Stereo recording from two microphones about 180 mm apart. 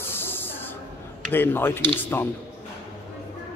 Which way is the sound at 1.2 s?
10° left (ahead or behind).